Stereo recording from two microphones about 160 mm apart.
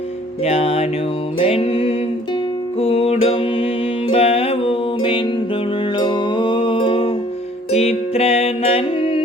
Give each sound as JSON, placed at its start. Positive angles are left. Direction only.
{"t": 0.4, "sound": "music", "side_deg": 40}